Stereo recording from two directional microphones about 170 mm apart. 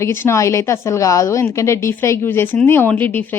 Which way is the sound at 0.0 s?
15° left (ahead or behind).